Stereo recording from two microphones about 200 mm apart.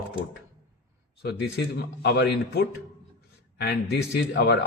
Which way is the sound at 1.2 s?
55° left (ahead or behind).